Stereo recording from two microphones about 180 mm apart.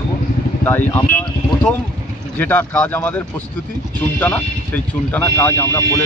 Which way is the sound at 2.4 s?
10° left (ahead or behind).